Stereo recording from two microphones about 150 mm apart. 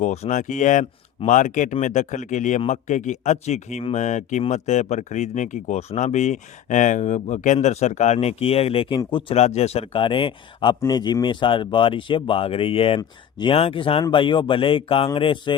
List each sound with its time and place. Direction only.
0.0 s speech: 50° left (ahead or behind); by 9.2 s 30° left (ahead or behind)
9.3 s speech: 45° left (ahead or behind)